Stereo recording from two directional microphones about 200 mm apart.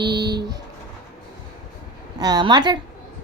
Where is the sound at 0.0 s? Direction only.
20° right (ahead or behind).